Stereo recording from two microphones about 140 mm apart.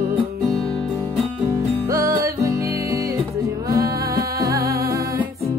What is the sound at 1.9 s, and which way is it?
Music, 20° right (ahead or behind).